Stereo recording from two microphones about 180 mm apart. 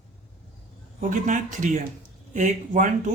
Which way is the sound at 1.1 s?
45° right (ahead or behind).